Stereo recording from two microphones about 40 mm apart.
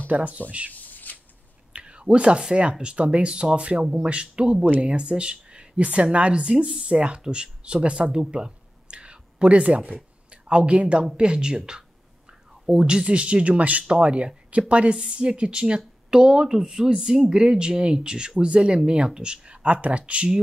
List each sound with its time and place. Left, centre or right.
0.1 s speech: right
0.7 s shuffling cards: left
1.7 s whispering: right
2.5 s speech: right
8.0 s a sound: centre
10.3 s speech: right